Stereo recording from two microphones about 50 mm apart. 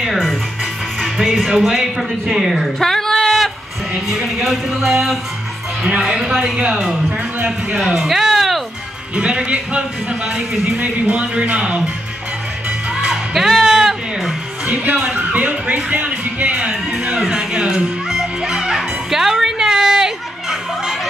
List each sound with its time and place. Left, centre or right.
0.9 s speech: centre
2.8 s a sound: centre
4.1 s speech: centre
7.8 s music: centre
9.1 s speech: right
10.2 s speech: centre
10.8 s speech: right
12.6 s music: centre
14.7 s speech: right
17.0 s speech: centre
17.4 s music: centre